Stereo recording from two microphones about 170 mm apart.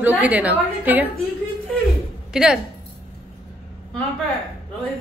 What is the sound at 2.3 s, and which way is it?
Speech, 5° right (ahead or behind).